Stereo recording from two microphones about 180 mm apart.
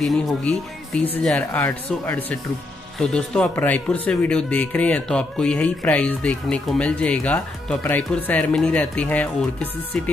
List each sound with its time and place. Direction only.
0.0 s speech: centre (ahead or behind)